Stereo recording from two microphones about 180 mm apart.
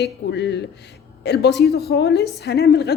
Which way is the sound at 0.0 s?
70° left (ahead or behind).